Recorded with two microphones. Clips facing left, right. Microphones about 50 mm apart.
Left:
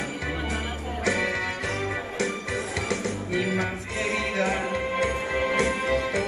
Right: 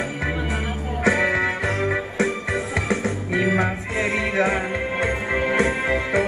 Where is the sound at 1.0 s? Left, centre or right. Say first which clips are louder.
Right 6 dB; right.